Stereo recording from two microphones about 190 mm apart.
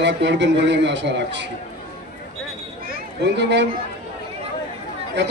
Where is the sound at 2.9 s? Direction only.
65° right (ahead or behind).